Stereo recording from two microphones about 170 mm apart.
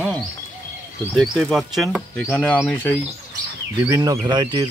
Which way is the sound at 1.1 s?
Centre (ahead or behind).